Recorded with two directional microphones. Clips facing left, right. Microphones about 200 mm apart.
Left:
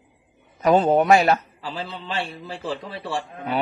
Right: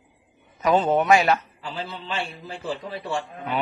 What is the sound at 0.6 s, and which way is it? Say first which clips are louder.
A man's voice: left 3 dB; 35° left (ahead or behind).